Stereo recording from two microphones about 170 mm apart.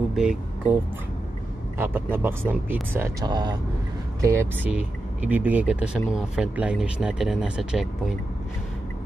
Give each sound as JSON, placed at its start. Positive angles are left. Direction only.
{"t": 0.1, "sound": "a sound", "side_deg": -5}
{"t": 1.8, "sound": "speech", "side_deg": -10}
{"t": 3.3, "sound": "speech", "side_deg": -25}